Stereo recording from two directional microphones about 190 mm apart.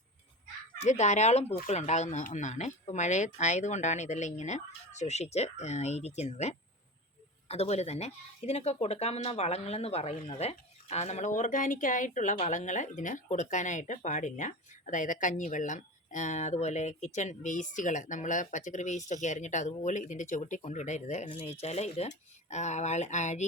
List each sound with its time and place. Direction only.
0.8 s speech: 35° left (ahead or behind)